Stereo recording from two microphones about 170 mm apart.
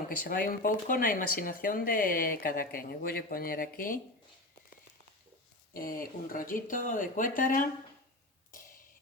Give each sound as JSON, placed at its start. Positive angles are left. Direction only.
{"t": 0.2, "sound": "speech", "side_deg": 55}
{"t": 5.7, "sound": "speech", "side_deg": 55}
{"t": 8.5, "sound": "a sound", "side_deg": 55}